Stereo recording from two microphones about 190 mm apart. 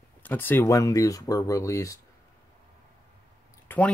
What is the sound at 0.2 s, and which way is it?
Speech, 10° left (ahead or behind).